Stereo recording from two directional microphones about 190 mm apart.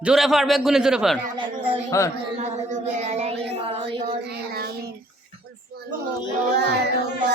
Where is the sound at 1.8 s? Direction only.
15° left (ahead or behind).